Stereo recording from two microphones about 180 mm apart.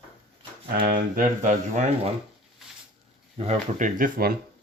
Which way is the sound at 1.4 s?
40° right (ahead or behind).